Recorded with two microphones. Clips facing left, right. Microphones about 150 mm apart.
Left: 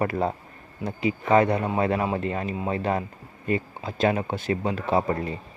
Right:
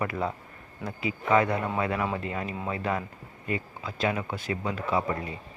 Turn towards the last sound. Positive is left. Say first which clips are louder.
# left 4 dB
turn(degrees=40)  # may be behind; listen again after turning